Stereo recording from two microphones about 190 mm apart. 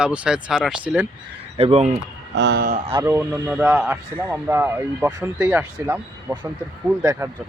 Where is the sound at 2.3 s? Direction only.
65° right (ahead or behind).